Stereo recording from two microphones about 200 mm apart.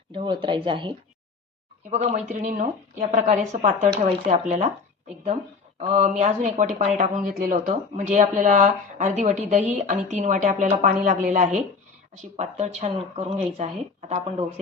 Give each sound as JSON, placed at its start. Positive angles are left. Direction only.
{"t": 0.1, "sound": "speech", "side_deg": -25}
{"t": 5.8, "sound": "speech", "side_deg": -35}